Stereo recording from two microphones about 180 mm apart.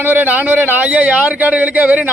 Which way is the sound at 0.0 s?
10° right (ahead or behind).